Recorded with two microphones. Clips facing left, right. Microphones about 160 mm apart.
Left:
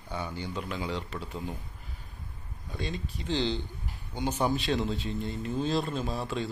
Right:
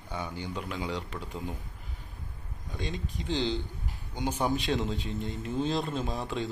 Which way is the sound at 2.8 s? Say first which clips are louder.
Even; 15° right (ahead or behind).